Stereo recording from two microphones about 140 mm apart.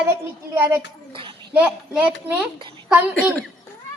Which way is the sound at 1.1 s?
40° right (ahead or behind).